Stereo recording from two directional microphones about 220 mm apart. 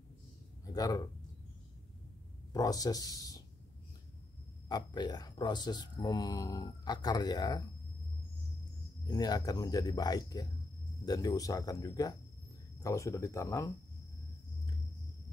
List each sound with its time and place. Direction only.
0.7 s speech: 15° left (ahead or behind)
2.5 s speech: 15° left (ahead or behind)
4.6 s speech: 20° left (ahead or behind)
9.0 s speech: 15° left (ahead or behind)